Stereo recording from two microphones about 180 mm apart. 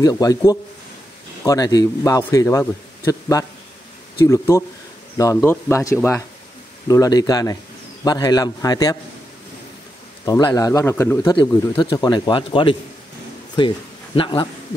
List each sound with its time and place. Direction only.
0.0 s a man's voice: 20° left (ahead or behind)
10.2 s a man's voice: 20° left (ahead or behind)
11.8 s a man's voice: 25° left (ahead or behind)